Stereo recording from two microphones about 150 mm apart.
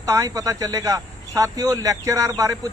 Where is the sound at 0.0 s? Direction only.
20° right (ahead or behind).